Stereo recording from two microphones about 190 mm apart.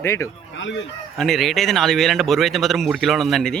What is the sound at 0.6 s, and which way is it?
Speech, 75° left (ahead or behind).